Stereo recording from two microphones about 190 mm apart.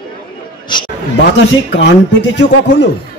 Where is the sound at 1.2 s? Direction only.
65° left (ahead or behind).